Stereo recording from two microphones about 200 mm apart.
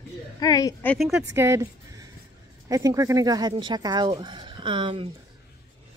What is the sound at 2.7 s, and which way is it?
Speech, 15° right (ahead or behind).